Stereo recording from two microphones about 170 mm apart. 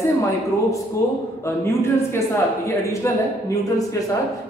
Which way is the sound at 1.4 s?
15° left (ahead or behind).